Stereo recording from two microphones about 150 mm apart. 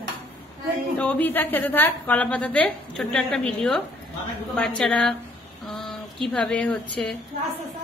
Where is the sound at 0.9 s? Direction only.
10° left (ahead or behind).